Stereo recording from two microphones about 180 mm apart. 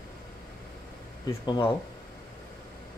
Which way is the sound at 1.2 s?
20° left (ahead or behind).